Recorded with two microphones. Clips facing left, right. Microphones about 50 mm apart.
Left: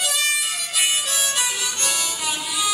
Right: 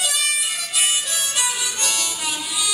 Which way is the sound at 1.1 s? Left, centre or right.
Centre.